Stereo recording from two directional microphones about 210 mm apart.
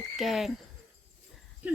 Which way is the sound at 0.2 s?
Centre (ahead or behind).